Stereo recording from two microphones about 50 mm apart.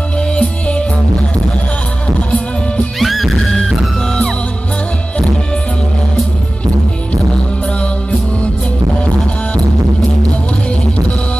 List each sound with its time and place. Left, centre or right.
0.4 s music: left
3.0 s music: centre
3.5 s music: centre